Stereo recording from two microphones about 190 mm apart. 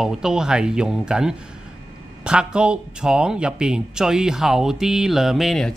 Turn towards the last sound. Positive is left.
turn(degrees=0)  # may be behind; listen again after turning